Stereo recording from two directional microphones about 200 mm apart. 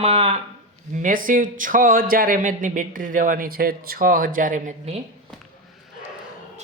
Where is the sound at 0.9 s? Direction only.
40° right (ahead or behind).